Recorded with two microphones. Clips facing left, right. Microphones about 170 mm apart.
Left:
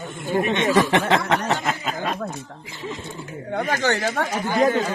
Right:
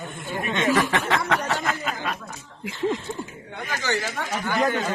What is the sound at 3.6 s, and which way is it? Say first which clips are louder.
Speech: left 5 dB; 60° left (ahead or behind).